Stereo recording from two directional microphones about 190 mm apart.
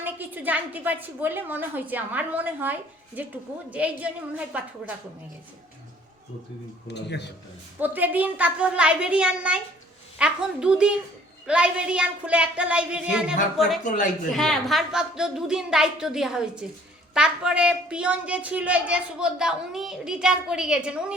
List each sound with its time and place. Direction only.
0.0 s a woman's voice: 10° right (ahead or behind)
6.8 s speech: 65° left (ahead or behind)
7.8 s a woman's voice: 10° right (ahead or behind)
13.8 s a woman's voice: 45° left (ahead or behind)
14.3 s a woman's voice: centre (ahead or behind)